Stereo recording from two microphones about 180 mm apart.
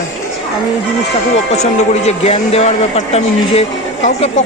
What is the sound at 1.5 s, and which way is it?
A man's voice, 35° left (ahead or behind).